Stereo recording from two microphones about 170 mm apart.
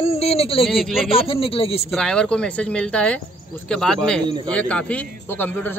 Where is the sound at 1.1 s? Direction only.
35° left (ahead or behind).